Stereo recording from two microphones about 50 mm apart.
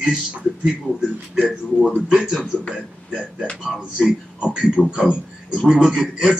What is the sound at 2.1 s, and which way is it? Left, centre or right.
Speech, centre.